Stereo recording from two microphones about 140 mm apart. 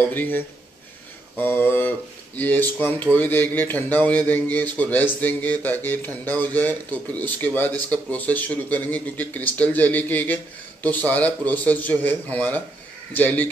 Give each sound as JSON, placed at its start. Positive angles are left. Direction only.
{"t": 0.1, "sound": "a man's voice", "side_deg": 15}
{"t": 1.4, "sound": "a man's voice", "side_deg": 15}